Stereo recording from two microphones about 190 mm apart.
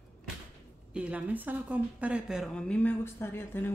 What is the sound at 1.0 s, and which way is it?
A woman's voice, 5° right (ahead or behind).